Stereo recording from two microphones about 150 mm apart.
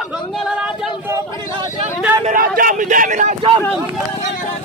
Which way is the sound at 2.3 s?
65° right (ahead or behind).